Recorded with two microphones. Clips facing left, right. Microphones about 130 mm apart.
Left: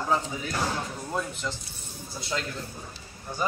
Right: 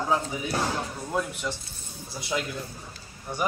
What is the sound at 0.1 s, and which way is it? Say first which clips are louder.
A man's voice: even; 15° right (ahead or behind).